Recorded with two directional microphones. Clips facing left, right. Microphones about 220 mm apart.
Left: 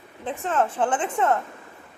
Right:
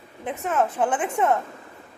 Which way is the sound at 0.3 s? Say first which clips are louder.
Even; 10° right (ahead or behind).